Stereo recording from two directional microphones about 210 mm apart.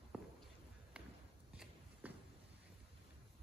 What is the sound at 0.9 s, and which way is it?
Walk, 5° right (ahead or behind).